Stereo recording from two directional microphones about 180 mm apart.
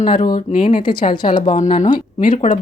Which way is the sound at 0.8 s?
25° left (ahead or behind).